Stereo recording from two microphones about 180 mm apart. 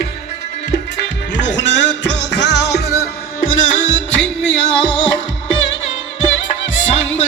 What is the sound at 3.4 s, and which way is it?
Music, 45° left (ahead or behind).